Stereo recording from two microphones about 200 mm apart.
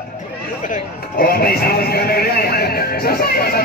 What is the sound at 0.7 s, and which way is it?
Speech, 50° left (ahead or behind).